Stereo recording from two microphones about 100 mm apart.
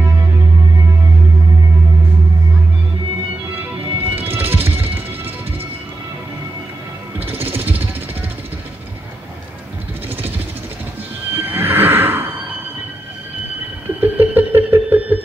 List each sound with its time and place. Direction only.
4.1 s music: 20° right (ahead or behind)
7.2 s jackhammer: 20° right (ahead or behind)
11.3 s neigh: 20° right (ahead or behind)
13.8 s a sound: 20° right (ahead or behind)